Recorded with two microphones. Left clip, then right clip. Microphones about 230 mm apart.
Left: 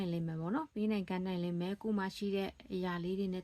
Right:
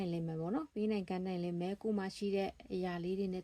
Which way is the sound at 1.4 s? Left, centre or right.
Left.